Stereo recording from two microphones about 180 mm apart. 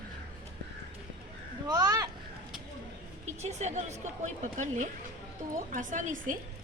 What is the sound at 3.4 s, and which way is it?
A woman's voice, 40° right (ahead or behind).